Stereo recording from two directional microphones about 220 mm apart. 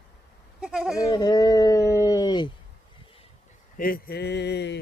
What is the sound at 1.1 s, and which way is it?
Speech, 15° left (ahead or behind).